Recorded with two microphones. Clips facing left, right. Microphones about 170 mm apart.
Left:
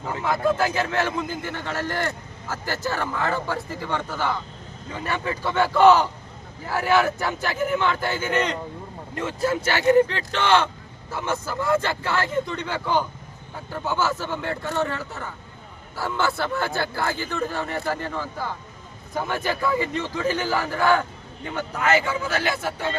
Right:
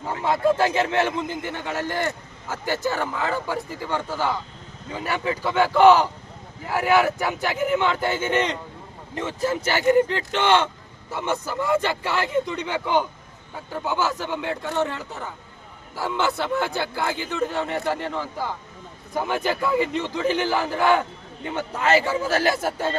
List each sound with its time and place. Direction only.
0.1 s a man's voice: 25° right (ahead or behind); by 23.0 s 40° right (ahead or behind)